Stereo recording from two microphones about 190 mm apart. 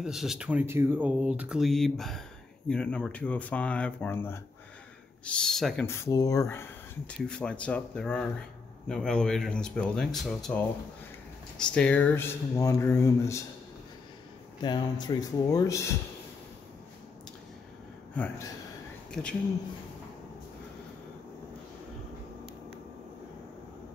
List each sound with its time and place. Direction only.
0.0 s speech: centre (ahead or behind)
5.9 s speech: 15° left (ahead or behind)
14.6 s speech: 25° left (ahead or behind)
19.2 s speech: 5° left (ahead or behind)